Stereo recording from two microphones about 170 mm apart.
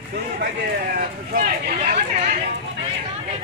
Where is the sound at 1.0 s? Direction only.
50° right (ahead or behind).